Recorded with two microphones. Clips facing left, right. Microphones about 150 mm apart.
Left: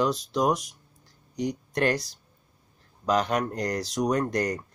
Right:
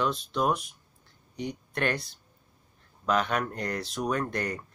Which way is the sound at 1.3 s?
90° left.